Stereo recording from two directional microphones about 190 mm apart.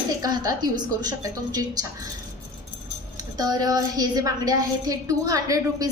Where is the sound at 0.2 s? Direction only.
20° right (ahead or behind).